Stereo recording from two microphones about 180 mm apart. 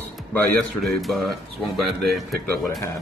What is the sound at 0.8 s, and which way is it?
Speech, centre (ahead or behind).